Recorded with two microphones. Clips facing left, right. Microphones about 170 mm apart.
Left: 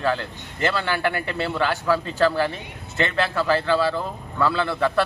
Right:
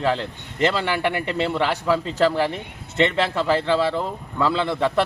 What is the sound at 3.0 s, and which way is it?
A man's voice, 20° right (ahead or behind).